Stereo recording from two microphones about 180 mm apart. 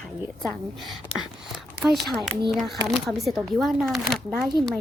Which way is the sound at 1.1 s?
30° left (ahead or behind).